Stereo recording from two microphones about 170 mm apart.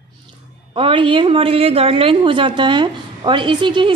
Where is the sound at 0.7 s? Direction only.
30° right (ahead or behind).